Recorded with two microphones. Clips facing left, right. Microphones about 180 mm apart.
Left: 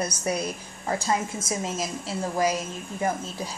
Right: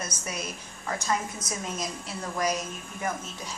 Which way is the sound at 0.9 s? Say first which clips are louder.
Left 4 dB; 30° left (ahead or behind).